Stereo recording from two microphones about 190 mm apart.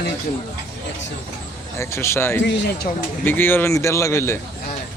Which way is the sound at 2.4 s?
70° left (ahead or behind).